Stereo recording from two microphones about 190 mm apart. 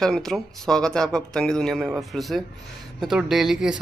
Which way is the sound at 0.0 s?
5° left (ahead or behind).